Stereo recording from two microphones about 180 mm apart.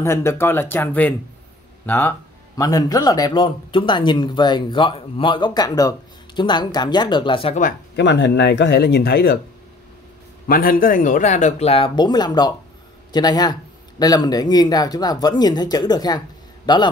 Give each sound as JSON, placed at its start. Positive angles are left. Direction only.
{"t": 0.0, "sound": "speech", "side_deg": 15}
{"t": 7.9, "sound": "speech", "side_deg": 80}
{"t": 10.5, "sound": "a man's voice", "side_deg": 50}